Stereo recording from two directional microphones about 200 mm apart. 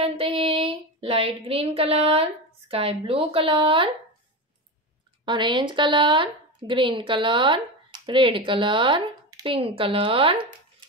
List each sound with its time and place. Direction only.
0.0 s a sound: 30° right (ahead or behind)
2.7 s a woman's voice: 30° right (ahead or behind)
5.2 s a woman's voice: 25° right (ahead or behind)